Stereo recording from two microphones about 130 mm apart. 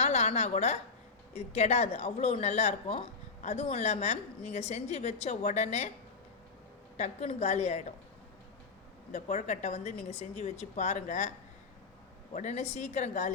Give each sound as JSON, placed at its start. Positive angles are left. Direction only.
{"t": 0.0, "sound": "a woman's voice", "side_deg": 55}
{"t": 6.9, "sound": "speech", "side_deg": 60}
{"t": 9.1, "sound": "speech", "side_deg": 60}
{"t": 12.3, "sound": "speech", "side_deg": 65}